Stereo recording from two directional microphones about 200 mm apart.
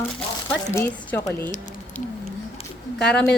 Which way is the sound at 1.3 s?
10° left (ahead or behind).